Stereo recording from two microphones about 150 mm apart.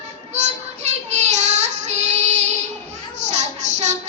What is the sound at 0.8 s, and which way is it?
Child singing, 45° right (ahead or behind).